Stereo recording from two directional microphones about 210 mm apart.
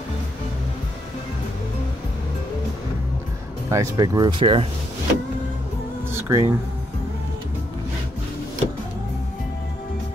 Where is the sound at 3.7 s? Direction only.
15° right (ahead or behind).